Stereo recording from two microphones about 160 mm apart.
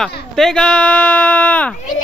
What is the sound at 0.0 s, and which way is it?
Speech, 5° left (ahead or behind).